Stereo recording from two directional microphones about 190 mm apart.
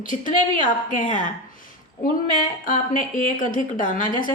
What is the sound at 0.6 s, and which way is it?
A woman's voice, 45° left (ahead or behind).